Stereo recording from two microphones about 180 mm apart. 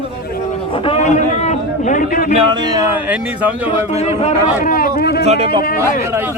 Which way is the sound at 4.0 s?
35° left (ahead or behind).